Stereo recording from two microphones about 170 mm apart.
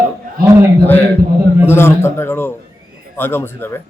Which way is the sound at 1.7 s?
15° left (ahead or behind).